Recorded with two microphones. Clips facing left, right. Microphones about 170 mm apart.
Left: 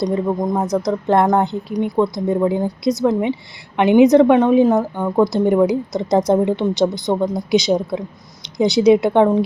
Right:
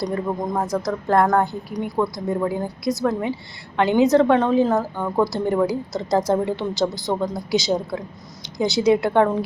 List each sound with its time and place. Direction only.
0.0 s a woman's voice: 20° left (ahead or behind)